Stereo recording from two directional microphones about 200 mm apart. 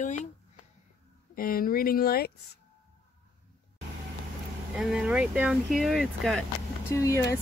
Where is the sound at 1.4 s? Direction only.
45° left (ahead or behind).